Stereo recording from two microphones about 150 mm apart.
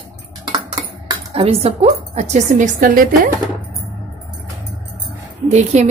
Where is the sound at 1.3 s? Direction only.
40° right (ahead or behind); by 3.3 s 70° right (ahead or behind).